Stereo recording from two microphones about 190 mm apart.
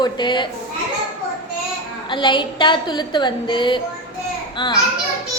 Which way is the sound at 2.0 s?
25° left (ahead or behind).